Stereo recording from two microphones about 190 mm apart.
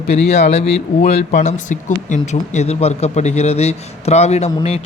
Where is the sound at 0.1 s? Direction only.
35° left (ahead or behind).